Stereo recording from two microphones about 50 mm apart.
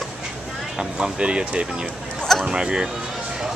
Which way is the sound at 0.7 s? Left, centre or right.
Centre.